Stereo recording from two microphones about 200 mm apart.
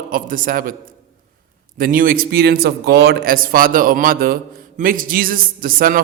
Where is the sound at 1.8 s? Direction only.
45° right (ahead or behind).